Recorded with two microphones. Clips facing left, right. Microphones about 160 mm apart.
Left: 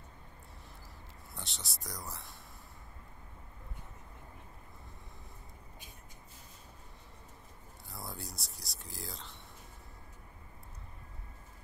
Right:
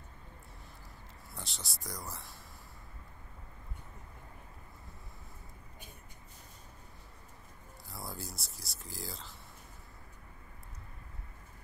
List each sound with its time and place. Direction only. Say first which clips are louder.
1.3 s speech: right 1 dB; centre (ahead or behind)
7.9 s speech: right 1 dB; centre (ahead or behind)